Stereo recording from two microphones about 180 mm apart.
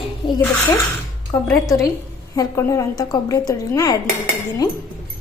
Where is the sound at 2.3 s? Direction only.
15° left (ahead or behind).